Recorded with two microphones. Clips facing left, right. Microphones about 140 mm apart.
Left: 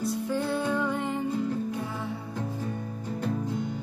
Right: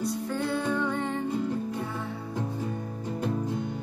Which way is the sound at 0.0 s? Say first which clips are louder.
Left 1 dB; 5° left (ahead or behind).